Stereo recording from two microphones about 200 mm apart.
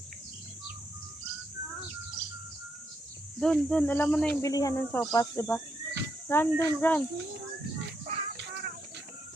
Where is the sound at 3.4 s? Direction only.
5° left (ahead or behind).